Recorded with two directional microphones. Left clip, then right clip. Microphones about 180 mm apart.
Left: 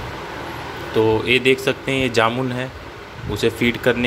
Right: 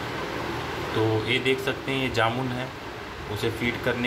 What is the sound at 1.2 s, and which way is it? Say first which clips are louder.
Speech: left 8 dB; 45° left (ahead or behind).